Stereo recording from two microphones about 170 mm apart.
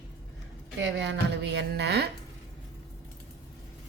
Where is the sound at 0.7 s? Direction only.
90° right.